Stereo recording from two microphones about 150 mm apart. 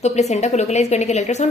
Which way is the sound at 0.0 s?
50° left (ahead or behind).